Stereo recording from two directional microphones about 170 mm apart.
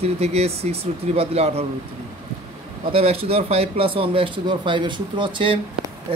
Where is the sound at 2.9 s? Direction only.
35° right (ahead or behind).